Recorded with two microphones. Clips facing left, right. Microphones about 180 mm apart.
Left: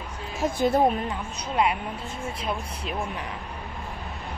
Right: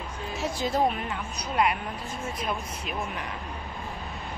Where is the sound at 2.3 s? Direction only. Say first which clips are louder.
Left 1 dB; 30° left (ahead or behind).